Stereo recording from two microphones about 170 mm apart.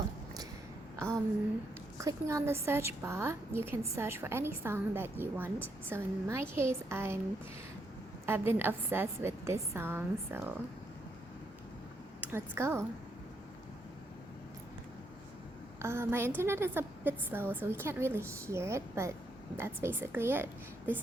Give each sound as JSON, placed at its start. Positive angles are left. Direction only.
{"t": 0.9, "sound": "a sound", "side_deg": -20}
{"t": 2.0, "sound": "a woman's voice", "side_deg": -20}
{"t": 8.3, "sound": "a woman's voice", "side_deg": -15}
{"t": 12.3, "sound": "a woman's voice", "side_deg": -15}
{"t": 15.8, "sound": "a woman's voice", "side_deg": -15}